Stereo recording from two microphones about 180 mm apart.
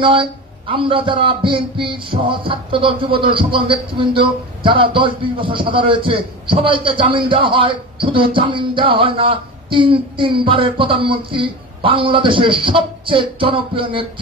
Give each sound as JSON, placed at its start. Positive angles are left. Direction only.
{"t": 0.0, "sound": "a man's voice", "side_deg": -30}